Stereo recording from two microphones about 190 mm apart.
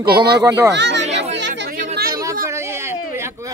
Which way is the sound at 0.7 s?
65° right (ahead or behind).